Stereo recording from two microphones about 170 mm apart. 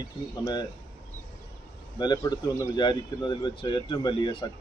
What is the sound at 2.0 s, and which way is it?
Speech, 25° left (ahead or behind).